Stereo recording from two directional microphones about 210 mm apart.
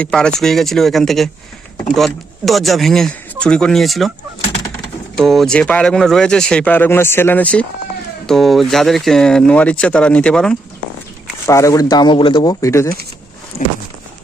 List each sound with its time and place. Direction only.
0.0 s speech: 5° left (ahead or behind)
5.1 s speech: centre (ahead or behind)
11.4 s speech: 15° left (ahead or behind)